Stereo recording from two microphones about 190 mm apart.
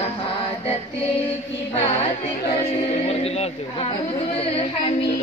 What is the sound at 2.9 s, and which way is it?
A woman's voice, 30° left (ahead or behind).